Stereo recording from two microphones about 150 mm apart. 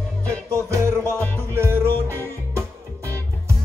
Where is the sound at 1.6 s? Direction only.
15° right (ahead or behind).